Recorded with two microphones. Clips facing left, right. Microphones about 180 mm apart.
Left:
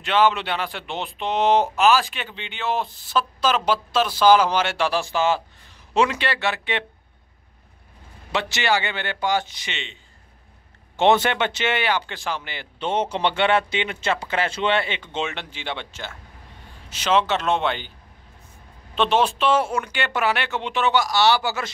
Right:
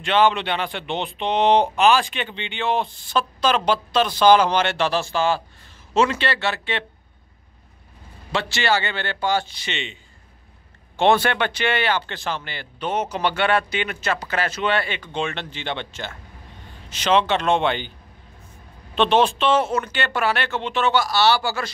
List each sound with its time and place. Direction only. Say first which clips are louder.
0.0 s speech: right 1 dB; 5° left (ahead or behind)
8.3 s speech: right 1 dB; 20° left (ahead or behind)
11.0 s speech: even; 20° left (ahead or behind); by 17.9 s centre (ahead or behind)
18.9 s speech: right 2 dB; 5° left (ahead or behind)